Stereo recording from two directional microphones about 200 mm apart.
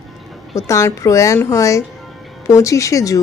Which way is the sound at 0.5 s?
15° left (ahead or behind).